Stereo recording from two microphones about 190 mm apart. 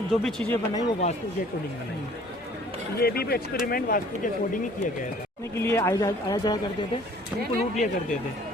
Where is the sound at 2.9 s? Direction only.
55° left (ahead or behind).